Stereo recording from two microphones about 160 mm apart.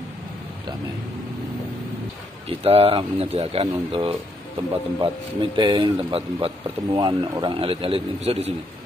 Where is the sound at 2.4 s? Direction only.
40° right (ahead or behind).